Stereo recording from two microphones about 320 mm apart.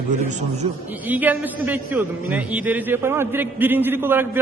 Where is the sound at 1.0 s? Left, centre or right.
Centre.